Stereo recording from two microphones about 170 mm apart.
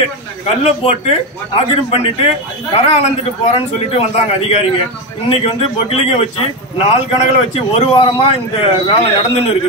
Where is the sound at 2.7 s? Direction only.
35° left (ahead or behind).